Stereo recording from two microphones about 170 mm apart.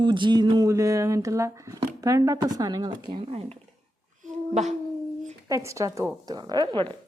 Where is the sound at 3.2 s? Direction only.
40° right (ahead or behind).